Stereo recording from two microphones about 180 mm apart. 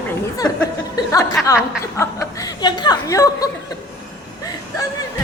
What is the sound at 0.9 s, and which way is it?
Speech, 20° left (ahead or behind).